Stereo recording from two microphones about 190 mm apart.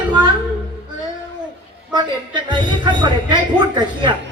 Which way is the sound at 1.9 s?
25° right (ahead or behind).